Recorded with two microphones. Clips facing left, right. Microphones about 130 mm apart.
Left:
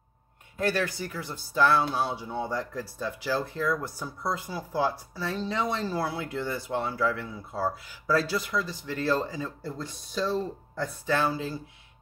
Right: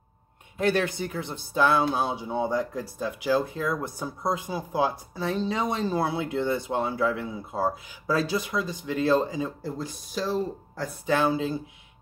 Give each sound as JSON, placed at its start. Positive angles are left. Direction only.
{"t": 0.6, "sound": "speech", "side_deg": -20}